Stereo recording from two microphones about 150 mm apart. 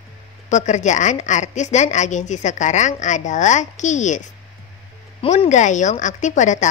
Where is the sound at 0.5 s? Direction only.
55° left (ahead or behind).